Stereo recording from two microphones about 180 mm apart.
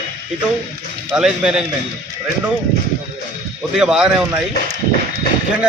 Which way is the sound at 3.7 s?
5° right (ahead or behind).